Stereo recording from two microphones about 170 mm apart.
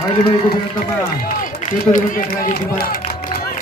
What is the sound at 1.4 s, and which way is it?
Run, 50° left (ahead or behind).